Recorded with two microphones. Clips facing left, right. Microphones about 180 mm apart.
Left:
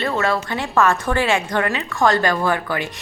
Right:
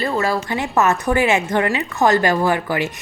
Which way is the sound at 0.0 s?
Centre (ahead or behind).